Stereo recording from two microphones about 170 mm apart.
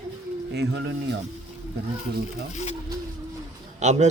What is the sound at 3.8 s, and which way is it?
Speech, 40° right (ahead or behind).